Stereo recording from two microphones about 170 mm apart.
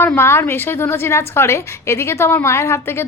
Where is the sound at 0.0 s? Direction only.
15° left (ahead or behind).